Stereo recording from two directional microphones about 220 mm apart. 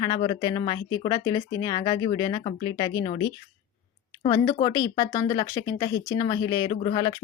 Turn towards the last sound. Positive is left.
turn(degrees=25)  # may be behind; listen again after turning